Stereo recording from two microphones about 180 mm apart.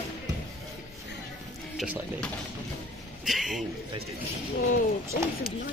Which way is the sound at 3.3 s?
Centre (ahead or behind).